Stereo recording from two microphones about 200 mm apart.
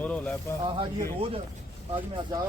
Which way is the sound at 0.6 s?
25° right (ahead or behind).